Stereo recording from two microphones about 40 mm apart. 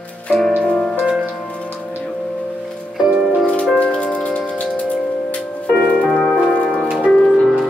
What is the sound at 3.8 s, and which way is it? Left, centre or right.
Music, left.